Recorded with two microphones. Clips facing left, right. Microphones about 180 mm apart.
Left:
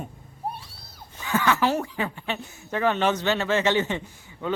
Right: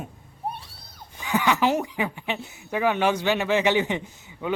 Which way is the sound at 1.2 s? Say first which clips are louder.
Even; 15° right (ahead or behind).